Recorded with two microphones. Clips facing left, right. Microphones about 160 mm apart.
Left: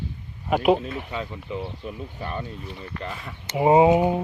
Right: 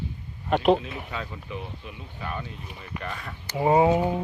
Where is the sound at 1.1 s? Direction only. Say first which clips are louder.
Left 4 dB; 25° left (ahead or behind).